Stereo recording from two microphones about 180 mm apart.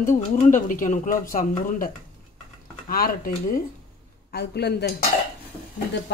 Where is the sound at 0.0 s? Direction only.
45° left (ahead or behind).